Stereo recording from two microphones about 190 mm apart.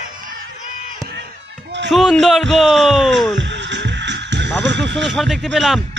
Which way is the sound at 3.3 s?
70° right (ahead or behind).